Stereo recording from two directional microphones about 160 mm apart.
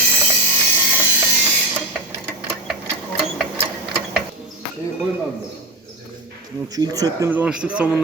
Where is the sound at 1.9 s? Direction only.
5° right (ahead or behind).